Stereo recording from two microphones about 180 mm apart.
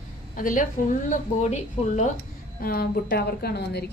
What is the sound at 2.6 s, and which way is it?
A woman's voice, 55° left (ahead or behind).